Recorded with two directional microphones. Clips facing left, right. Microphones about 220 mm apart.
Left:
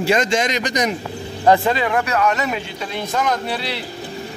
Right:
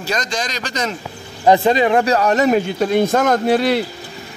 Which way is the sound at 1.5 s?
20° right (ahead or behind).